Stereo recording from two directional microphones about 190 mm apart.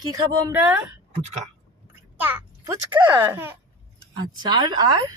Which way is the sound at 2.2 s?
10° right (ahead or behind).